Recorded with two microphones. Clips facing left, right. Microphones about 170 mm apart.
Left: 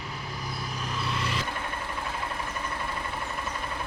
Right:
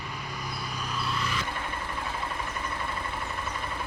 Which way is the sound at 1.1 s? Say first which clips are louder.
Left 1 dB; 25° left (ahead or behind).